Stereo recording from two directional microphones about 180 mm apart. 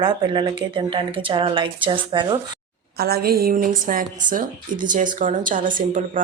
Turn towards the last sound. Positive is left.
turn(degrees=-45)  # may be behind; listen again after turning